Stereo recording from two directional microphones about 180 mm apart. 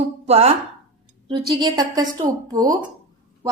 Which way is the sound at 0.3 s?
35° right (ahead or behind).